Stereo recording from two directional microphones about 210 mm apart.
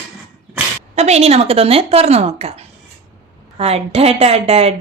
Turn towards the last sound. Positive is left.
turn(degrees=-30)  # may be behind; listen again after turning